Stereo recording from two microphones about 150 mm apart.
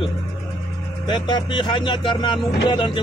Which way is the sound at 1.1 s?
30° left (ahead or behind).